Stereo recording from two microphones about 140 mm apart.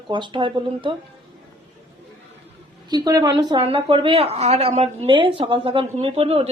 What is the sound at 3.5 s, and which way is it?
A woman's voice, 40° right (ahead or behind).